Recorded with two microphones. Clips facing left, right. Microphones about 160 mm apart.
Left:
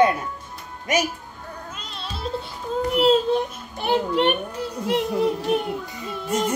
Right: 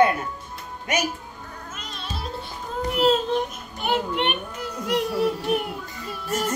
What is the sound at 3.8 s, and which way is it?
A child's voice, 35° left (ahead or behind).